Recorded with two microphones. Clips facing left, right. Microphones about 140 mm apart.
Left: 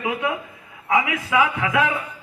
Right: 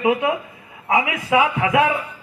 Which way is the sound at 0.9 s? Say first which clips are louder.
Right 2 dB; 25° right (ahead or behind).